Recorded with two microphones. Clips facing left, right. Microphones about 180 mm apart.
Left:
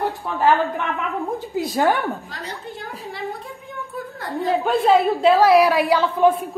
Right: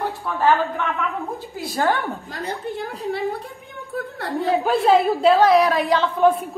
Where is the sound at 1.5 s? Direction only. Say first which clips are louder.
Left 2 dB; 20° left (ahead or behind).